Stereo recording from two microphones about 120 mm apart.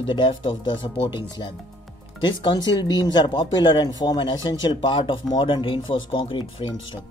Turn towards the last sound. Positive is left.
turn(degrees=45)  # may be behind; listen again after turning